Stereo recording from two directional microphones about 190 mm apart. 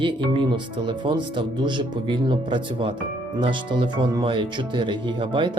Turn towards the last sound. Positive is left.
turn(degrees=-25)  # may be behind; listen again after turning